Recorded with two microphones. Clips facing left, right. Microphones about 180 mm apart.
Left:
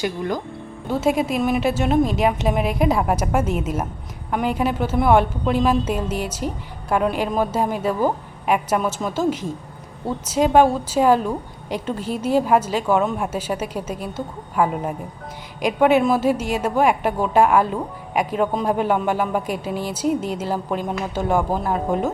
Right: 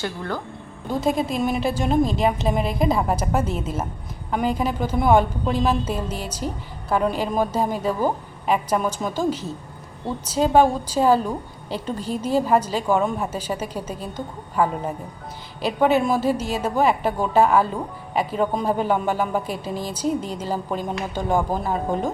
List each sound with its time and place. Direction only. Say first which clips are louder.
0.0 s a woman's voice: left 4 dB; 15° left (ahead or behind)